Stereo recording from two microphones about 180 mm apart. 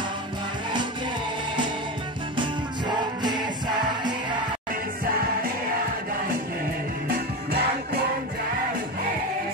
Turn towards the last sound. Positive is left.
turn(degrees=-60)  # may be behind; listen again after turning